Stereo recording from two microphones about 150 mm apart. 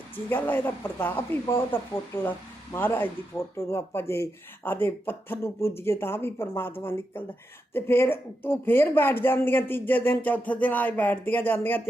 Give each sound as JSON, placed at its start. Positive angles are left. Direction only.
{"t": 0.3, "sound": "speech", "side_deg": 10}